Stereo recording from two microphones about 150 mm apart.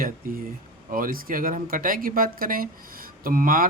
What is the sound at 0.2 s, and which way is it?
Speech, 80° right.